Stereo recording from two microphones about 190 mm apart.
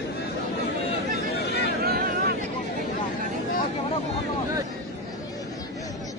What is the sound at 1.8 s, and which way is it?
Vehicle, 55° right (ahead or behind).